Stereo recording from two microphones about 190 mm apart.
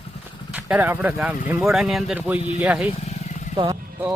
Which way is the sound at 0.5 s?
10° right (ahead or behind).